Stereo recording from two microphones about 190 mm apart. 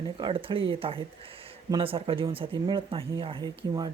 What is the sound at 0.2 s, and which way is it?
Speech, 25° right (ahead or behind).